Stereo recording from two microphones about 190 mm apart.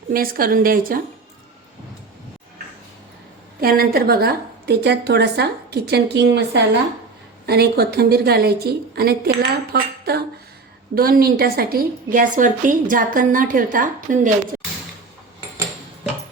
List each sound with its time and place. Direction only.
0.1 s a woman's voice: 50° right (ahead or behind)
3.6 s a woman's voice: 50° right (ahead or behind)